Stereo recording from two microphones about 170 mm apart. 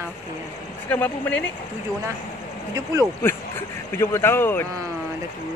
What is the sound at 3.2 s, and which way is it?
Speech, 15° left (ahead or behind).